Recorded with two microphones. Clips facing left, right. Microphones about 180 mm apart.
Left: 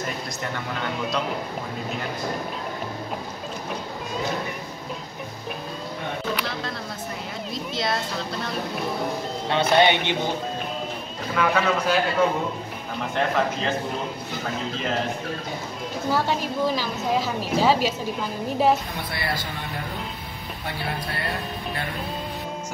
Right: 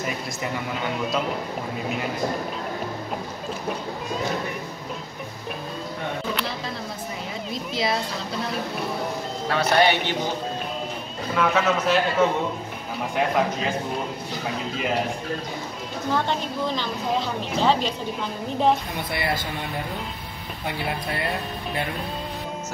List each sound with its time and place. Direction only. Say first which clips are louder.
0.4 s a man's voice: right 2 dB; 5° right (ahead or behind)
6.3 s a sound: even; centre (ahead or behind)
7.7 s a sound: right 2 dB; centre (ahead or behind)
9.5 s speech: left 1 dB; 20° left (ahead or behind)
11.3 s a man's voice: even; centre (ahead or behind)
16.1 s a woman's voice: left 1 dB; 5° left (ahead or behind)